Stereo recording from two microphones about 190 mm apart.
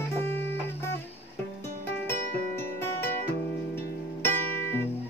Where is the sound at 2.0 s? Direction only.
15° left (ahead or behind).